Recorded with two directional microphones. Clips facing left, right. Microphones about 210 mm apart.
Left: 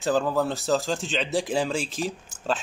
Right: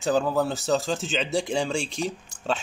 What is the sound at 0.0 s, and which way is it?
Speech, centre (ahead or behind).